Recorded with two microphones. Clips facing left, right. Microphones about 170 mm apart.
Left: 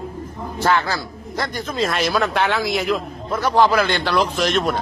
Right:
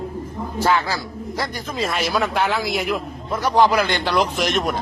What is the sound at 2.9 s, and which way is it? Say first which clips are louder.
A man's voice: left 2 dB; 10° right (ahead or behind).